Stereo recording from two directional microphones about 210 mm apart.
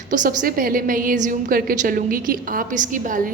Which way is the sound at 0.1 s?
40° right (ahead or behind).